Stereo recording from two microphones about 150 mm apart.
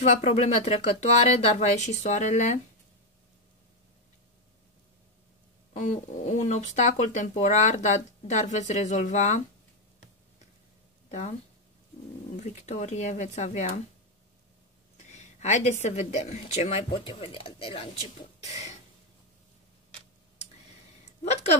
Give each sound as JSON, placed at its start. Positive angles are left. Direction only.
{"t": 0.0, "sound": "speech", "side_deg": 45}
{"t": 5.7, "sound": "speech", "side_deg": 50}
{"t": 12.4, "sound": "speech", "side_deg": 50}
{"t": 15.0, "sound": "speech", "side_deg": 50}
{"t": 18.4, "sound": "a sound", "side_deg": 50}
{"t": 21.0, "sound": "a sound", "side_deg": 45}